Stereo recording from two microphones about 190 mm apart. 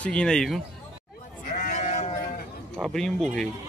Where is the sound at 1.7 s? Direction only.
40° left (ahead or behind).